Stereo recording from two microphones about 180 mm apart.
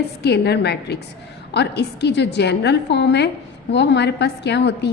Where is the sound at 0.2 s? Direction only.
65° left (ahead or behind).